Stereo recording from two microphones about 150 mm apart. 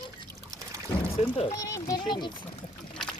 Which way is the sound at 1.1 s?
45° left (ahead or behind).